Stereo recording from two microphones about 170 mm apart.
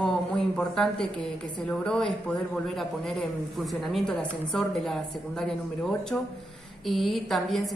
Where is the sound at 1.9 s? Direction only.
5° left (ahead or behind).